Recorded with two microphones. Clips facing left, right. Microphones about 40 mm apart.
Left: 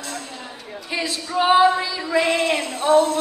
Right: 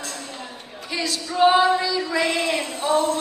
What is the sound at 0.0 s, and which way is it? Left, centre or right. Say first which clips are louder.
A woman's voice: left 1 dB; centre.